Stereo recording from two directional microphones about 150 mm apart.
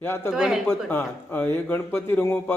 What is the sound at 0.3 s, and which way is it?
Speech, 5° right (ahead or behind).